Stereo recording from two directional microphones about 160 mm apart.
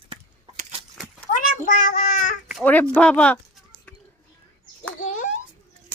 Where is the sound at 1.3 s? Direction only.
55° left (ahead or behind).